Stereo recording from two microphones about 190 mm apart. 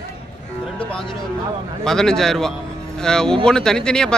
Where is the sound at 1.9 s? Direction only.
5° left (ahead or behind).